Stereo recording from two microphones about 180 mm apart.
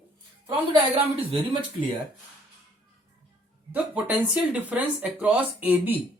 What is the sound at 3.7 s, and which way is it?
Speech, 5° right (ahead or behind).